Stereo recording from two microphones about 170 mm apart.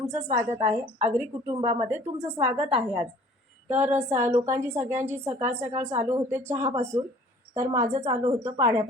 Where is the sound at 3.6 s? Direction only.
10° right (ahead or behind).